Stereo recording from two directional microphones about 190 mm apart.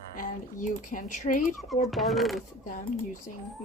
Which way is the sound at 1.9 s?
Centre (ahead or behind).